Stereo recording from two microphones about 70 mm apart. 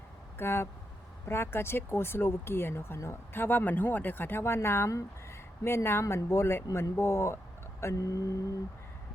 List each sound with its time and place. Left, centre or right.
0.3 s speech: left